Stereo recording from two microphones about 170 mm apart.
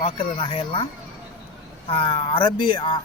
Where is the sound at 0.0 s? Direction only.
30° left (ahead or behind).